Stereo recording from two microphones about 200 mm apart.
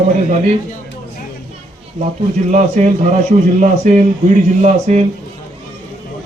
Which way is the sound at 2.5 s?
35° right (ahead or behind).